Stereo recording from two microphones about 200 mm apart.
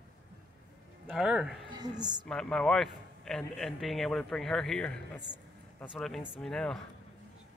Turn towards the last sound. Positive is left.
turn(degrees=5)  # may be behind; listen again after turning